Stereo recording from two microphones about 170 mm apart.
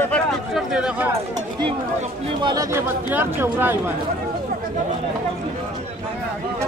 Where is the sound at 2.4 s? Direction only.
20° right (ahead or behind).